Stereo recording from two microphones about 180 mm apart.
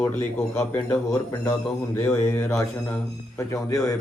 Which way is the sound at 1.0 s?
20° left (ahead or behind).